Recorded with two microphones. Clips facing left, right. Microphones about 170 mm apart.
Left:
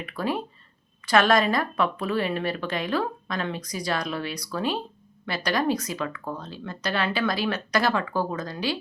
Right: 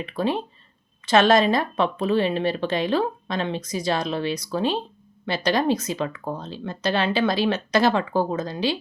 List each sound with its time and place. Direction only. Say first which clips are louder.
0.0 s a woman's voice: right 4 dB; 25° right (ahead or behind)